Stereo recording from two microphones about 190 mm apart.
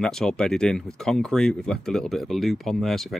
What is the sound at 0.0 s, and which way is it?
Speech, 5° left (ahead or behind).